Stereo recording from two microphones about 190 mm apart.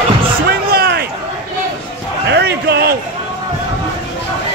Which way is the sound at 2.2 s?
60° right (ahead or behind).